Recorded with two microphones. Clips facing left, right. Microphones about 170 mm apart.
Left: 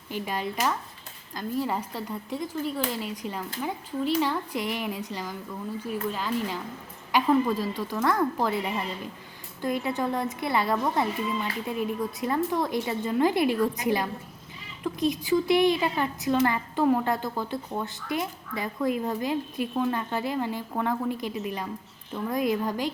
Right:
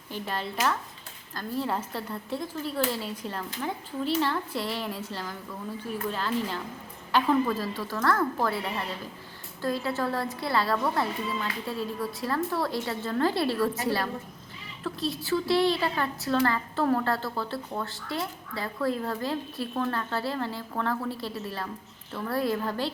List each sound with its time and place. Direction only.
0.1 s a woman's voice: 15° left (ahead or behind)